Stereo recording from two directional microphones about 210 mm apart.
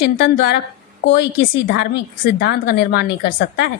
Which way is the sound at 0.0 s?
50° left (ahead or behind).